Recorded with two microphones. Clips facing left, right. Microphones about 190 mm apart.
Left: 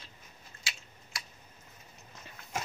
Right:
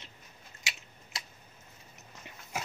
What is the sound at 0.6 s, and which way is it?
Typing, 20° right (ahead or behind).